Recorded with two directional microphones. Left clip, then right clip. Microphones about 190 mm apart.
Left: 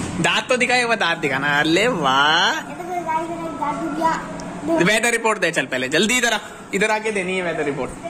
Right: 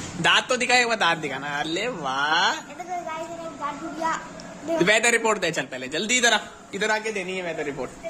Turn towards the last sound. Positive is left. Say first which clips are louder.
# left 7 dB
turn(degrees=-25)  # may be behind; listen again after turning